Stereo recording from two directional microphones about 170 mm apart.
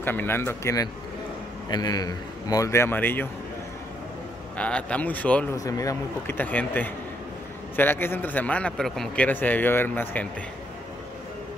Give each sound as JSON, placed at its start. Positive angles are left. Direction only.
{"t": 0.0, "sound": "a man's voice", "side_deg": 10}
{"t": 4.6, "sound": "a man's voice", "side_deg": 5}
{"t": 5.6, "sound": "a man's voice", "side_deg": 20}